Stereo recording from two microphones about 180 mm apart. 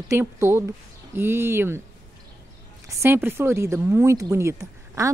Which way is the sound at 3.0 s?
10° right (ahead or behind).